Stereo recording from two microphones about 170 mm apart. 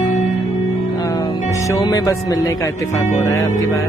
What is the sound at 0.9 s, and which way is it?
Music, 20° left (ahead or behind).